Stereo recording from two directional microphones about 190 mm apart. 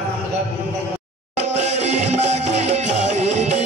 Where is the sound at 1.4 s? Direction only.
35° right (ahead or behind).